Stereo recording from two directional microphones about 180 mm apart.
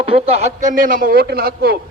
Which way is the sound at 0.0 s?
30° right (ahead or behind).